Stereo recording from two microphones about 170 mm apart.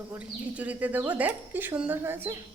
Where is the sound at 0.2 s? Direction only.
10° right (ahead or behind).